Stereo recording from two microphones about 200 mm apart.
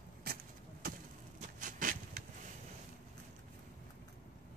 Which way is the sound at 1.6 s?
40° right (ahead or behind).